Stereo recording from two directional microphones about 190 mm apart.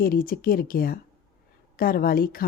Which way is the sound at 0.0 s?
50° left (ahead or behind).